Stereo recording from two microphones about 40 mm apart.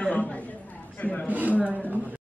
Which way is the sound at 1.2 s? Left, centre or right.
Right.